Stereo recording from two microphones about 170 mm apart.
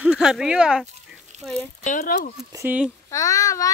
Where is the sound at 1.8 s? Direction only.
50° left (ahead or behind).